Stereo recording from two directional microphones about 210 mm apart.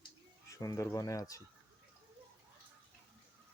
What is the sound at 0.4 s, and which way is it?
Speech, 15° left (ahead or behind).